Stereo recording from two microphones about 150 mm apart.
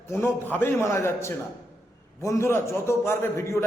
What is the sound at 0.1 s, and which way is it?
A man's voice, 15° left (ahead or behind).